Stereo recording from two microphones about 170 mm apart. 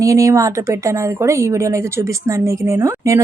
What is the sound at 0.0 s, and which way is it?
A woman's voice, 20° right (ahead or behind).